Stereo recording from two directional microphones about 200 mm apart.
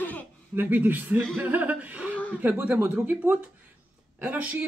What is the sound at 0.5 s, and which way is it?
Speech, 10° right (ahead or behind).